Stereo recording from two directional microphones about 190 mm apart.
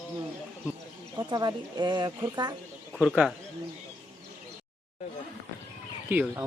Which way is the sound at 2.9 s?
5° left (ahead or behind).